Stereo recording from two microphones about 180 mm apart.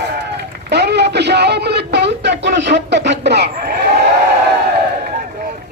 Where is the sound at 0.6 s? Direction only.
65° right (ahead or behind).